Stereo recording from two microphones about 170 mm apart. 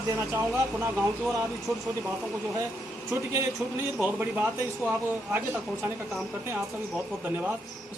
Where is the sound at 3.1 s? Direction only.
15° right (ahead or behind).